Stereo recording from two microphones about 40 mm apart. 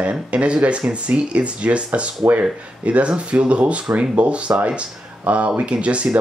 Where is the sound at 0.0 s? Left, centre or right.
Right.